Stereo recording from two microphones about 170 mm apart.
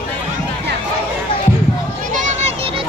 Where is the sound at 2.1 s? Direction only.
45° right (ahead or behind).